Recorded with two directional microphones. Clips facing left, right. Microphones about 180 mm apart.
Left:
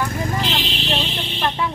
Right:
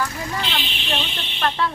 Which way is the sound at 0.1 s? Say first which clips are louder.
Left 4 dB; 45° left (ahead or behind).